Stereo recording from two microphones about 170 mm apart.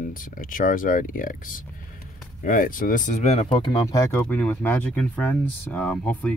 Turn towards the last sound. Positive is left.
turn(degrees=10)  # may be behind; listen again after turning